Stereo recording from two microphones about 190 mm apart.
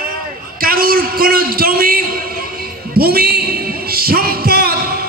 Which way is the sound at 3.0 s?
55° right (ahead or behind).